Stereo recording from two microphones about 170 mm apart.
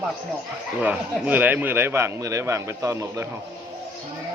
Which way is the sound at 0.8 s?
10° right (ahead or behind).